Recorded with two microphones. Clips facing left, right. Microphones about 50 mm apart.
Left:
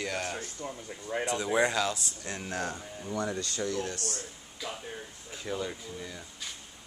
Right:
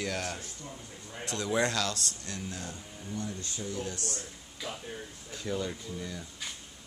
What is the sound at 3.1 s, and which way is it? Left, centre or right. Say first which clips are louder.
Speech: left 6 dB; left.